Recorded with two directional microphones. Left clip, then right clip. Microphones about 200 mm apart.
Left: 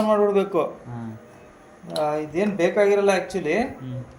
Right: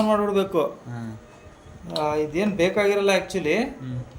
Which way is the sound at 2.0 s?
35° right (ahead or behind).